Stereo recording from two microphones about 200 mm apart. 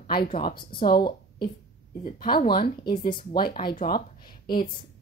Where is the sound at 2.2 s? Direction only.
25° left (ahead or behind).